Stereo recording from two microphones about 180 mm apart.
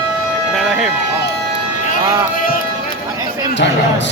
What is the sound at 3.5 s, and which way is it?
Speech, 80° left.